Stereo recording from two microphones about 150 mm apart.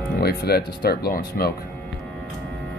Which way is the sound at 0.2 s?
90° left.